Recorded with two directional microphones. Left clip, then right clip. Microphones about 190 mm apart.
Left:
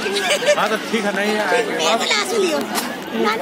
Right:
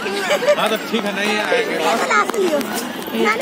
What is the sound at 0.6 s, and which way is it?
Speech, 35° left (ahead or behind).